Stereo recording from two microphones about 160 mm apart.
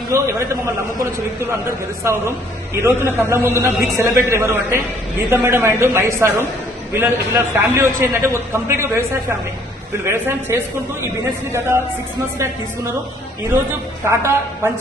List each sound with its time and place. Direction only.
0.1 s a man's voice: 15° right (ahead or behind)
10.1 s a man's voice: 15° right (ahead or behind)
14.1 s a man's voice: 15° right (ahead or behind)